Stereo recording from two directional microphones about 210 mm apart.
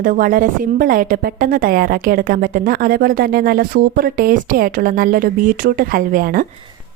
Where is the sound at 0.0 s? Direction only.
40° right (ahead or behind).